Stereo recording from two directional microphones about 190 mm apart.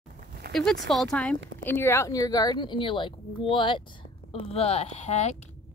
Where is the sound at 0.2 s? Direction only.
50° right (ahead or behind).